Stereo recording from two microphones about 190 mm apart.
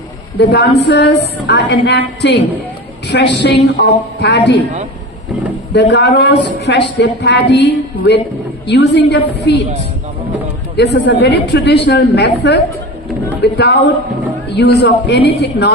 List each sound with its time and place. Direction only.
0.3 s speech: 60° left (ahead or behind)
5.7 s speech: 60° left (ahead or behind)
10.8 s speech: 60° left (ahead or behind)